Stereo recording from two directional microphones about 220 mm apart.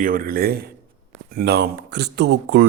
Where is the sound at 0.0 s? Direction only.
40° right (ahead or behind).